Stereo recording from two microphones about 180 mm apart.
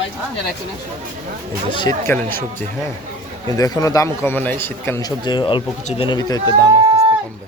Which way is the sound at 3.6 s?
20° left (ahead or behind).